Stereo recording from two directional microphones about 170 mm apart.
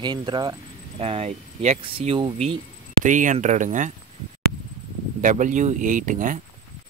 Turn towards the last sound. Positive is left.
turn(degrees=-50)  # may be behind; listen again after turning